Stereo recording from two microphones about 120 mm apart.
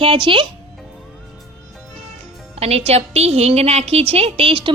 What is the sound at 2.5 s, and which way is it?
A woman's voice, 60° right (ahead or behind).